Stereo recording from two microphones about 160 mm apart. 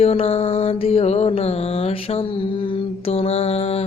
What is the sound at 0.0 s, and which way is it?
Mantra, 40° left (ahead or behind).